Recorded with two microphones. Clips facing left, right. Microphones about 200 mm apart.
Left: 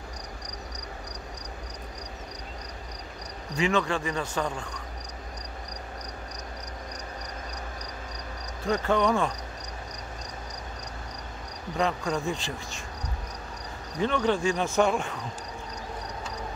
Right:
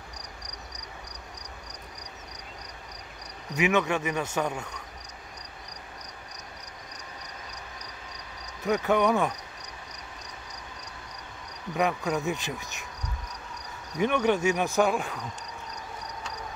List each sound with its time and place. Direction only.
3.8 s speech: 10° right (ahead or behind)
8.6 s speech: 10° right (ahead or behind)
11.7 s speech: 10° right (ahead or behind)
13.9 s speech: 10° right (ahead or behind)